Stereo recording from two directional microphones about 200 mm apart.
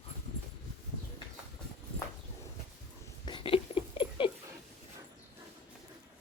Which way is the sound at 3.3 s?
25° left (ahead or behind).